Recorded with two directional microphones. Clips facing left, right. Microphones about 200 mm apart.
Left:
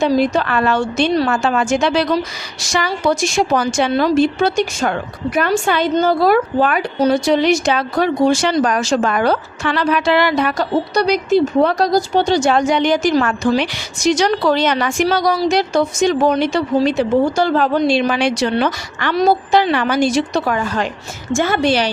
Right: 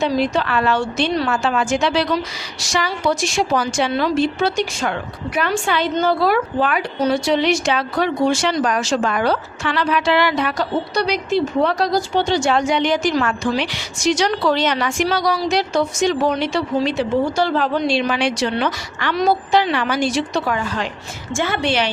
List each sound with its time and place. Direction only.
0.0 s a woman's voice: 45° left (ahead or behind)
19.1 s a woman's voice: 35° left (ahead or behind)